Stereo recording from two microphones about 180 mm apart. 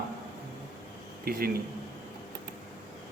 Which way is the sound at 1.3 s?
55° right (ahead or behind).